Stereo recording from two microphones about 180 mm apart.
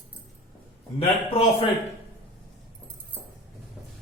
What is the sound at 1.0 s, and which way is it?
Speech, 30° left (ahead or behind).